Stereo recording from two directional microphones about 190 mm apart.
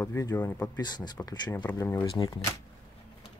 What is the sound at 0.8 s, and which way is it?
Speech, 20° left (ahead or behind).